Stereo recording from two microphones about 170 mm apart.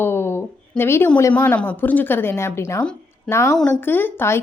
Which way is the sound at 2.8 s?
5° left (ahead or behind).